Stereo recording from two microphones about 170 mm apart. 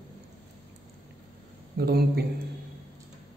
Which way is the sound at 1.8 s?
65° right (ahead or behind).